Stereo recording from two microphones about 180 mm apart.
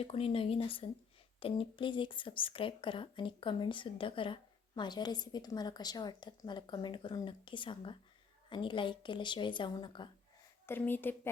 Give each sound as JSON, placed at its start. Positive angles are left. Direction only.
{"t": 0.0, "sound": "speech", "side_deg": 30}
{"t": 10.7, "sound": "a woman's voice", "side_deg": 10}